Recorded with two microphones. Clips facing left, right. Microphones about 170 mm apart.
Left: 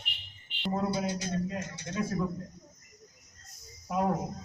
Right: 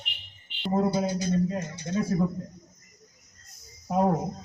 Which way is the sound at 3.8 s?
35° right (ahead or behind).